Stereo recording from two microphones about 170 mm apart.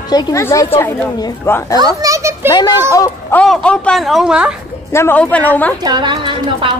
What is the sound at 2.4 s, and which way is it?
Speech, 25° left (ahead or behind).